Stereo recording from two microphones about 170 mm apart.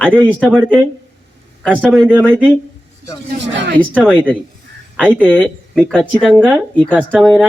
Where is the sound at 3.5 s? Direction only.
90° right.